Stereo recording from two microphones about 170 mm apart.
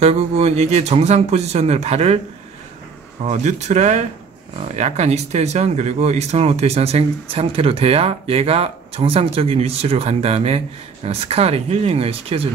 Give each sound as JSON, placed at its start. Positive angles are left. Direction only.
{"t": 0.0, "sound": "speech", "side_deg": -35}
{"t": 3.3, "sound": "speech", "side_deg": -40}